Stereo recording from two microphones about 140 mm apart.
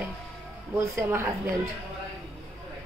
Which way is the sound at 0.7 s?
20° right (ahead or behind).